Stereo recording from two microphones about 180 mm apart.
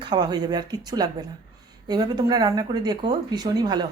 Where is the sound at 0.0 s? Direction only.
25° right (ahead or behind).